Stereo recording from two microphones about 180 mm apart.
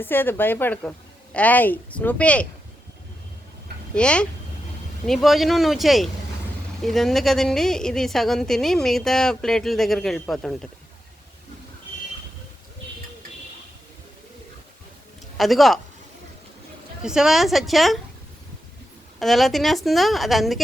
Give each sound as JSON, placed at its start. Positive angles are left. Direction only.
{"t": 0.0, "sound": "a woman's voice", "side_deg": 10}
{"t": 3.9, "sound": "a woman's voice", "side_deg": 5}
{"t": 15.4, "sound": "a woman's voice", "side_deg": 0}
{"t": 17.0, "sound": "a woman's voice", "side_deg": -5}
{"t": 19.2, "sound": "a woman's voice", "side_deg": 0}